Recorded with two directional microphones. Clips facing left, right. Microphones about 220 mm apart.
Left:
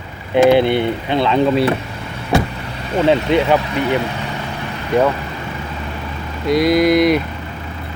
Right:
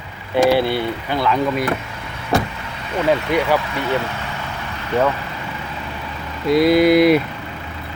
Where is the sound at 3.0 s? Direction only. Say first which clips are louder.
Left 4 dB; 25° left (ahead or behind).